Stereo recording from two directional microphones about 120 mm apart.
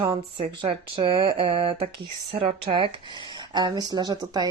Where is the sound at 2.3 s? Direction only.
50° right (ahead or behind).